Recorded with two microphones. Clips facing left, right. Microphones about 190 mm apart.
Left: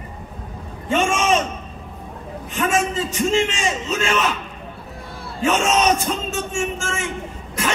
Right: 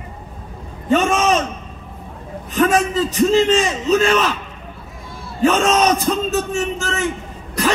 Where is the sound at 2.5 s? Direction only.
40° right (ahead or behind).